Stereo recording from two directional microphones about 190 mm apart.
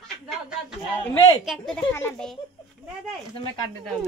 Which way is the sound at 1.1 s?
25° left (ahead or behind).